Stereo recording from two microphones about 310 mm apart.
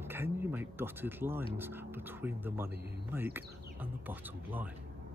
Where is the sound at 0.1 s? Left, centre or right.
Centre.